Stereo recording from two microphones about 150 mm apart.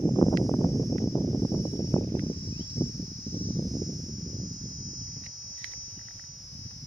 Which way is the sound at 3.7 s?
25° right (ahead or behind).